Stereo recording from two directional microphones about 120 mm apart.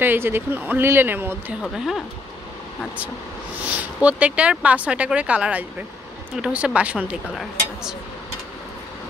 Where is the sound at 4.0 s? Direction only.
10° right (ahead or behind).